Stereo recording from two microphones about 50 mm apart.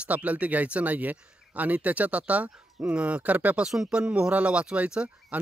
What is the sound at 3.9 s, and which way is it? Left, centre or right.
Speech, right.